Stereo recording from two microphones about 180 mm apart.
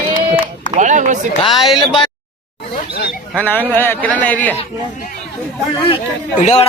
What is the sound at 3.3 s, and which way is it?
A man's voice, 10° left (ahead or behind).